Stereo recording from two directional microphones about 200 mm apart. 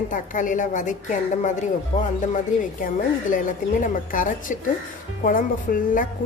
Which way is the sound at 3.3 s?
40° left (ahead or behind).